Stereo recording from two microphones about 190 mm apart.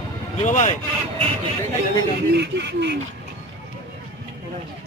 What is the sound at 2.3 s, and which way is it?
Speech, 65° right (ahead or behind).